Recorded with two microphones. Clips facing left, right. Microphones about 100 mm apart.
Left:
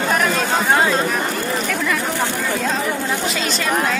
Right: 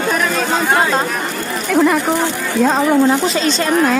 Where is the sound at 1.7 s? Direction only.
45° right (ahead or behind).